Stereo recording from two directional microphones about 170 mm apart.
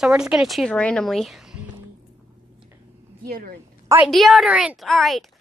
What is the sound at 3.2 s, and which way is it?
Speech, 60° right (ahead or behind).